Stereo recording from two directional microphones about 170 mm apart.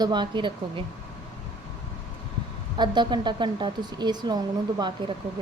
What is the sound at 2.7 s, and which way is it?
Speech, 25° right (ahead or behind).